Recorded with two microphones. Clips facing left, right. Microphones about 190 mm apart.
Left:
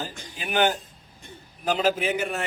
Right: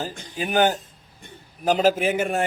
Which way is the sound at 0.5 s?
40° right (ahead or behind).